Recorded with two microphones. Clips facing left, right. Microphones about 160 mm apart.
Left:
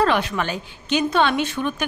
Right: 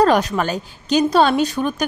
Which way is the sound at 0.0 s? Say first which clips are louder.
Right 5 dB; 40° right (ahead or behind).